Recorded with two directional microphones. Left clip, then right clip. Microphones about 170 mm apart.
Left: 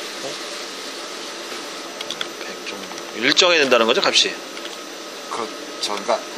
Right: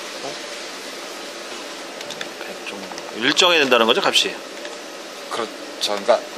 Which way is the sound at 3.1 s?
20° right (ahead or behind).